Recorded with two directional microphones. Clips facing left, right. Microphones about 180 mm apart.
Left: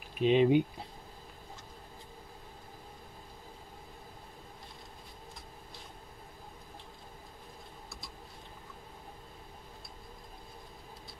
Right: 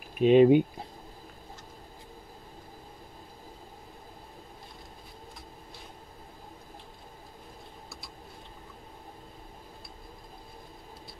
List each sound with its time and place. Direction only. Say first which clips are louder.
0.2 s speech: right 6 dB; 50° right (ahead or behind)